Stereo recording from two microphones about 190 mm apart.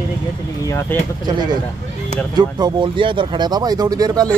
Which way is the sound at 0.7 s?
15° left (ahead or behind).